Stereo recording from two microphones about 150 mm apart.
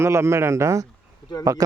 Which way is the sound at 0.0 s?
20° right (ahead or behind).